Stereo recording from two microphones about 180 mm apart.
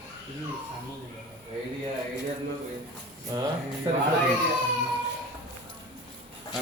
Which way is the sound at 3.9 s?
25° right (ahead or behind).